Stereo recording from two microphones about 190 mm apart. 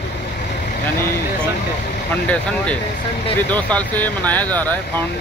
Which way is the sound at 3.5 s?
10° left (ahead or behind).